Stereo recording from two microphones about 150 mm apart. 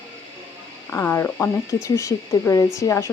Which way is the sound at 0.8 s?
15° left (ahead or behind).